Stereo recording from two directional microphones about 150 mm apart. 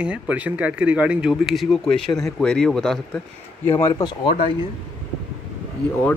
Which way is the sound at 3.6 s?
15° left (ahead or behind).